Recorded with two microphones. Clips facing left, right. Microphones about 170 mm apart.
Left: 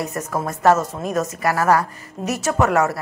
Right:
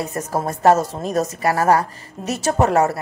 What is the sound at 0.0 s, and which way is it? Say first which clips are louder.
A woman's voice: right 1 dB; 30° right (ahead or behind).